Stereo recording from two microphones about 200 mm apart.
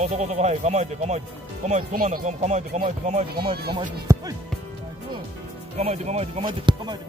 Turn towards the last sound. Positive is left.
turn(degrees=-25)  # may be behind; listen again after turning